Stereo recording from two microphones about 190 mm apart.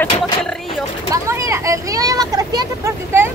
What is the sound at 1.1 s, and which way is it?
Speech, 15° right (ahead or behind).